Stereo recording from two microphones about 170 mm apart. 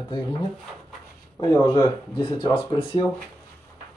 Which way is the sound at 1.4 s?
25° left (ahead or behind).